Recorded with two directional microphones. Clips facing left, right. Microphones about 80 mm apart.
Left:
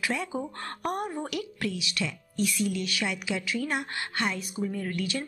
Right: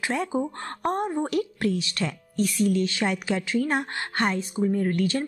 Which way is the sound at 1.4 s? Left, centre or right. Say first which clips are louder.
Right 7 dB; right.